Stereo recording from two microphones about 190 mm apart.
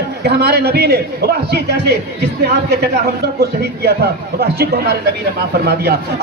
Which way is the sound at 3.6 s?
60° right (ahead or behind).